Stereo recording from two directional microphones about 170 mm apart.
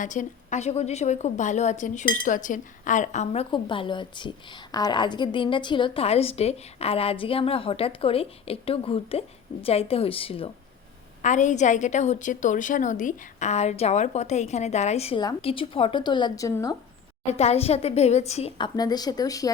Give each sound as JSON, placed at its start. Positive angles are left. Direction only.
{"t": 0.0, "sound": "a woman's voice", "side_deg": 45}
{"t": 3.5, "sound": "a woman's voice", "side_deg": 30}
{"t": 11.2, "sound": "a woman's voice", "side_deg": 45}
{"t": 17.3, "sound": "a woman's voice", "side_deg": 40}